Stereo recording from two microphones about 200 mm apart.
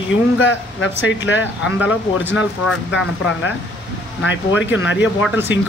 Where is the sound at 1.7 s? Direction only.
5° right (ahead or behind).